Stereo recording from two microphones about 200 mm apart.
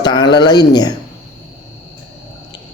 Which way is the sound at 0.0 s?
20° left (ahead or behind).